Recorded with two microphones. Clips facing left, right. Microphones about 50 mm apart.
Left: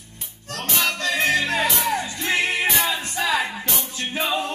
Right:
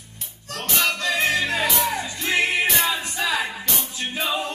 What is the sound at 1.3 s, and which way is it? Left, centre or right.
Music, left.